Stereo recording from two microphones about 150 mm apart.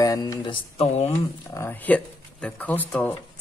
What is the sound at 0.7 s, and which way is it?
Speech, 45° left (ahead or behind).